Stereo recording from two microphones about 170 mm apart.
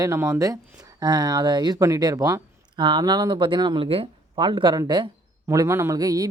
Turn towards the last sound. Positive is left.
turn(degrees=-20)  # may be behind; listen again after turning